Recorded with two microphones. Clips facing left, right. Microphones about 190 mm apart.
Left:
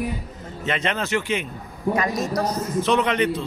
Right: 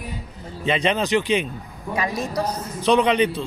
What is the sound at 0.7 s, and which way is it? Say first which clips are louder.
A man's voice: right 4 dB; 15° right (ahead or behind).